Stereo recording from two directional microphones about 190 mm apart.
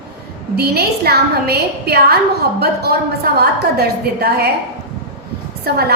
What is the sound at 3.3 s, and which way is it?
A woman's voice, 55° right (ahead or behind).